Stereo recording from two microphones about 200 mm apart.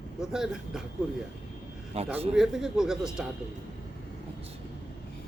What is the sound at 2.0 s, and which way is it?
Speech, 30° right (ahead or behind).